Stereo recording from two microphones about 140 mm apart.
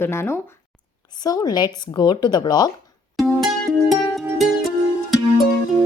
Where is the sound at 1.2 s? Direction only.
30° left (ahead or behind).